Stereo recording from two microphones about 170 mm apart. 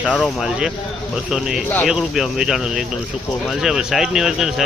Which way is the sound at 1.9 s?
5° right (ahead or behind).